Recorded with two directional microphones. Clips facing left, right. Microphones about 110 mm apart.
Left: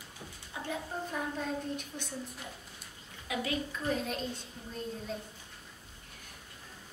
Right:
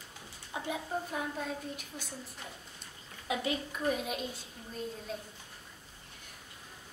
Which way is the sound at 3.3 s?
25° right (ahead or behind).